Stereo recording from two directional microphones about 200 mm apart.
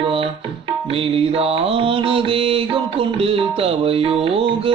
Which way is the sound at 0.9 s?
30° right (ahead or behind).